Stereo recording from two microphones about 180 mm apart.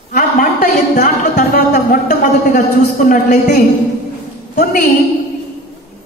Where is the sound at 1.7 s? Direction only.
45° left (ahead or behind).